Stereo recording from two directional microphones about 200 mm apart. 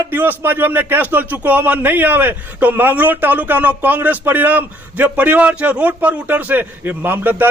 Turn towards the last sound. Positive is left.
turn(degrees=-10)  # may be behind; listen again after turning